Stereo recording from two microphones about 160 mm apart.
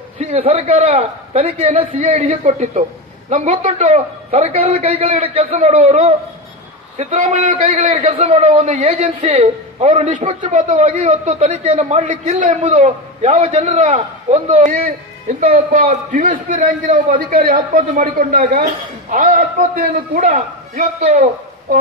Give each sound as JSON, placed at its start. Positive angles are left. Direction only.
{"t": 0.2, "sound": "a man's voice", "side_deg": -40}